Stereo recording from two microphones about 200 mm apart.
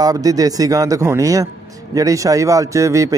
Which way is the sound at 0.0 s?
20° right (ahead or behind).